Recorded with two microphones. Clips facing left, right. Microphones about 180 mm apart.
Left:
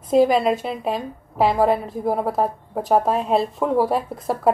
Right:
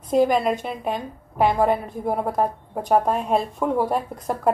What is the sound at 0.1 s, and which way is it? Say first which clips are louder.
Speech: left 3 dB; 30° left (ahead or behind).